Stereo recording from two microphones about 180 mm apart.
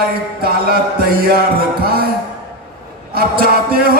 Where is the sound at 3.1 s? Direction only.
55° right (ahead or behind).